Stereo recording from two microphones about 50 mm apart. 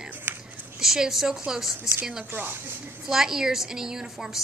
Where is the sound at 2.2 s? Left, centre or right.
Right.